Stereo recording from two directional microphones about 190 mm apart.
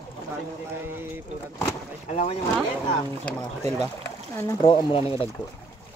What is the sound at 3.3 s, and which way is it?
Speech, 10° left (ahead or behind).